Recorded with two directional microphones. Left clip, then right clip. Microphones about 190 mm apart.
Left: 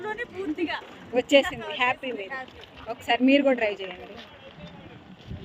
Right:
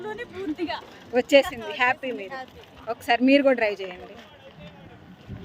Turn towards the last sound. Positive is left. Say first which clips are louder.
# right 2 dB
turn(degrees=-15)  # may be behind; listen again after turning